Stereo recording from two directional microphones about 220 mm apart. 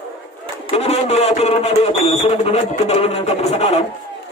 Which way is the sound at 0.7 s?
30° left (ahead or behind).